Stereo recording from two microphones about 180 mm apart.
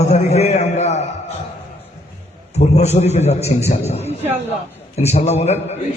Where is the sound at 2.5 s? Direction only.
40° left (ahead or behind).